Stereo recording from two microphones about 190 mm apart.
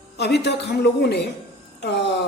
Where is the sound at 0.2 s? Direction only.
60° left (ahead or behind).